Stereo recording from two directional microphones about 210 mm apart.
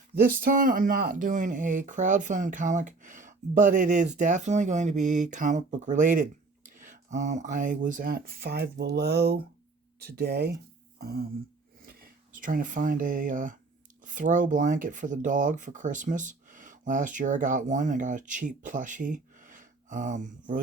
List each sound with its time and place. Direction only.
0.1 s speech: 45° right (ahead or behind)